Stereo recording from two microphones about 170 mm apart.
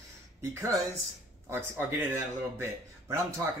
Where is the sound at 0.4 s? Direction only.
15° right (ahead or behind).